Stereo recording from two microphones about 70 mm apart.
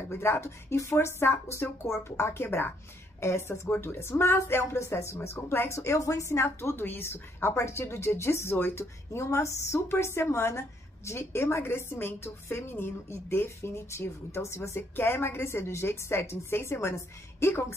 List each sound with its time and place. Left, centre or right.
0.1 s a woman's voice: left
5.8 s a woman's voice: left